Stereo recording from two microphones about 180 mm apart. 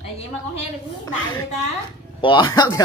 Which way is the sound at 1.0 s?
20° left (ahead or behind).